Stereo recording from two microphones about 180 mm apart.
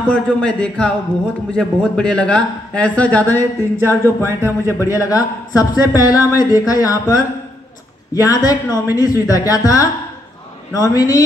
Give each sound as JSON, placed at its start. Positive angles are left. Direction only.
{"t": 0.0, "sound": "a man's voice", "side_deg": 5}